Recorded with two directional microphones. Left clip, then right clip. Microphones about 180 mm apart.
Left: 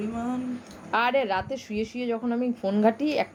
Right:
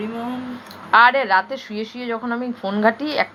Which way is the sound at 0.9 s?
25° left (ahead or behind).